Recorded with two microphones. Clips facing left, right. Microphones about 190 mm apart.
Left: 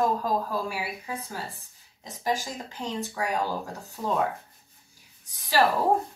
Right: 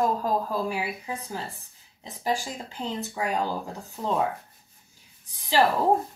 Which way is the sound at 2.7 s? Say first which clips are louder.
Right 1 dB; 15° right (ahead or behind).